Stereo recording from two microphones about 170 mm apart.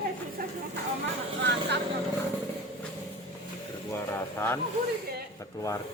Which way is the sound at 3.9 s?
10° left (ahead or behind).